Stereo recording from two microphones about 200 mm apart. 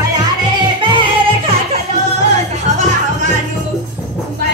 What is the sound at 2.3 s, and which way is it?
Music, 35° right (ahead or behind).